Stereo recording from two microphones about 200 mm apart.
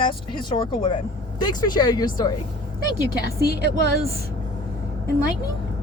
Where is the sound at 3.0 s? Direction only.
55° right (ahead or behind).